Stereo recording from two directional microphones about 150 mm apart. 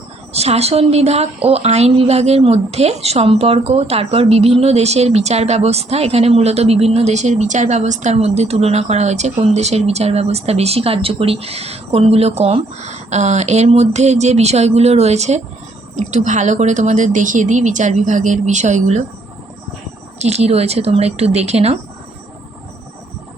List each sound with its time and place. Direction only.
0.3 s a woman's voice: 45° right (ahead or behind)
20.1 s a woman's voice: 45° right (ahead or behind)